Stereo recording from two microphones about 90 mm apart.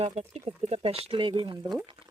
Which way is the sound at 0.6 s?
90° right.